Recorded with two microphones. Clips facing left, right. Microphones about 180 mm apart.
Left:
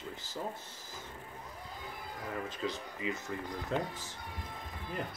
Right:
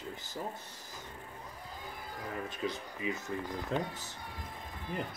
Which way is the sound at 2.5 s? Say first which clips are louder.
Even; 20° right (ahead or behind).